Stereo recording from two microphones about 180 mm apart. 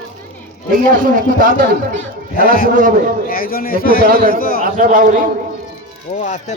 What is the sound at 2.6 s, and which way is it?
Speech, 45° right (ahead or behind).